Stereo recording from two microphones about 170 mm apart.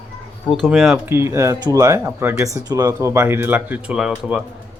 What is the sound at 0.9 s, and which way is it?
Speech, 15° right (ahead or behind).